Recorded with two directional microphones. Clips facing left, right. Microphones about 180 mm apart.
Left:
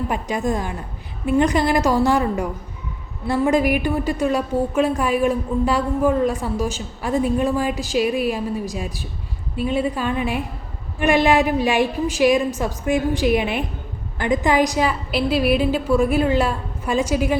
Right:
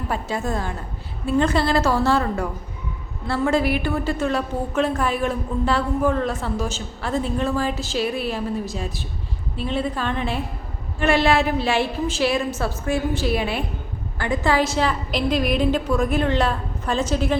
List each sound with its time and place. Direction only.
0.1 s a woman's voice: 15° left (ahead or behind)